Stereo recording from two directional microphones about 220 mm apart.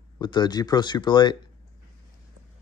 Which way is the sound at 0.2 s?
20° left (ahead or behind).